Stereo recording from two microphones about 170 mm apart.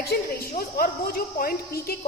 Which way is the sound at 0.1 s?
65° left (ahead or behind).